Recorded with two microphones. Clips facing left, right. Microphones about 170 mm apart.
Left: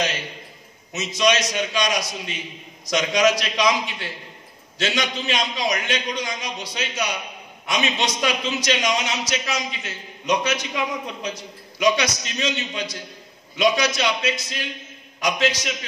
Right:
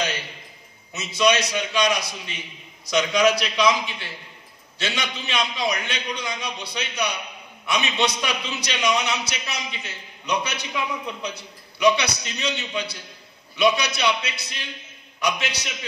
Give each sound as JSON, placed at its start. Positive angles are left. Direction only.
{"t": 0.9, "sound": "a man's voice", "side_deg": 45}
{"t": 4.8, "sound": "a man's voice", "side_deg": 45}